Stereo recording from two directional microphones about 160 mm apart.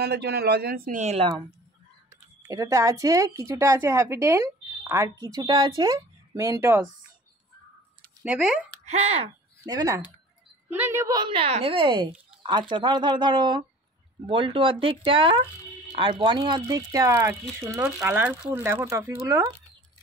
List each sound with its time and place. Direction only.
0.0 s a man's voice: 90° right; by 1.0 s 65° right (ahead or behind)
1.0 s speech: 40° right (ahead or behind)
2.4 s speech: 20° right (ahead or behind)
8.2 s speech: 5° right (ahead or behind)
8.8 s speech: 40° right (ahead or behind)
9.7 s speech: 25° right (ahead or behind)